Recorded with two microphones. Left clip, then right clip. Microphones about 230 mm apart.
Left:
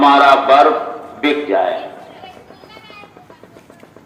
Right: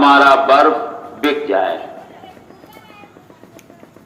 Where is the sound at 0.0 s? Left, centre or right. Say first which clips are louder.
Even; right.